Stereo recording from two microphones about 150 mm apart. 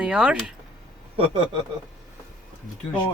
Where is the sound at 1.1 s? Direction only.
35° right (ahead or behind).